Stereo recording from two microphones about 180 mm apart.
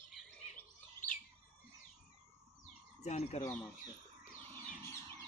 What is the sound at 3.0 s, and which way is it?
Speech, 35° left (ahead or behind).